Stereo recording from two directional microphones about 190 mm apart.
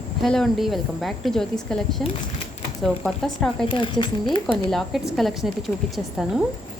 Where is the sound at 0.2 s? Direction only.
Centre (ahead or behind).